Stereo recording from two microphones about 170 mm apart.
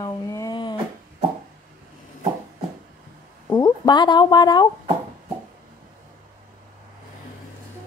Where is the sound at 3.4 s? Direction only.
25° left (ahead or behind).